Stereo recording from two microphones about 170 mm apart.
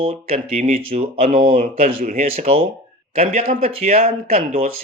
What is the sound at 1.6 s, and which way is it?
Speech, 55° right (ahead or behind).